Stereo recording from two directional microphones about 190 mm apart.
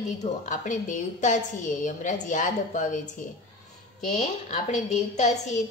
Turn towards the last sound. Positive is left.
turn(degrees=40)  # may be behind; listen again after turning